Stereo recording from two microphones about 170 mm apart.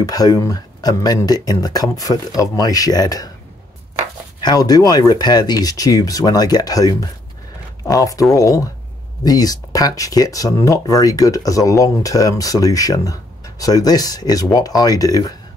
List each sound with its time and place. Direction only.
0.0 s speech: 20° left (ahead or behind)
4.4 s speech: 25° left (ahead or behind)